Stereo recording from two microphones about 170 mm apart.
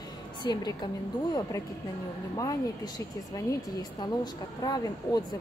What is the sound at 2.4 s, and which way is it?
Speech, 20° left (ahead or behind).